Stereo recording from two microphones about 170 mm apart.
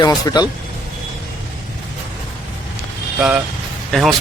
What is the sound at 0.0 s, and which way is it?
Speech, 25° left (ahead or behind).